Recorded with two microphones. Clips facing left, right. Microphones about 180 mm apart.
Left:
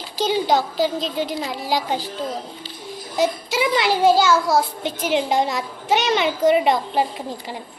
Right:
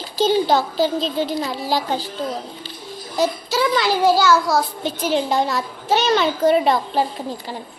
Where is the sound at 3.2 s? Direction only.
20° left (ahead or behind).